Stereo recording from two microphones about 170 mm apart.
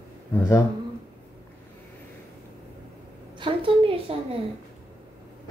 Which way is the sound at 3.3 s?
30° right (ahead or behind).